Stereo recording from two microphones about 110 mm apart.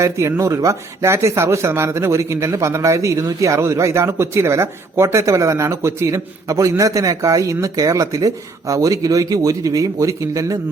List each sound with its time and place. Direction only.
0.0 s speech: 25° right (ahead or behind)